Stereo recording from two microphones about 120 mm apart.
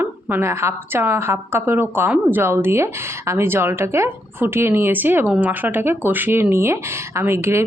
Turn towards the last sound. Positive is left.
turn(degrees=-20)  # may be behind; listen again after turning